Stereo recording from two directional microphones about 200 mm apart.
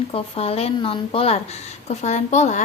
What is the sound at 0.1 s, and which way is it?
A woman's voice, 30° left (ahead or behind).